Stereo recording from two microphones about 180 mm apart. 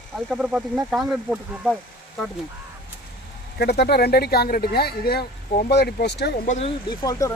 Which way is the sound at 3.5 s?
60° left (ahead or behind).